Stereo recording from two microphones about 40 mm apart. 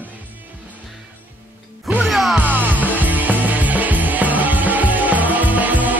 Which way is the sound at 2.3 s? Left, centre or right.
Right.